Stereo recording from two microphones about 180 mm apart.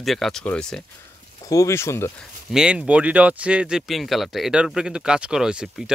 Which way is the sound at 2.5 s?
5° right (ahead or behind).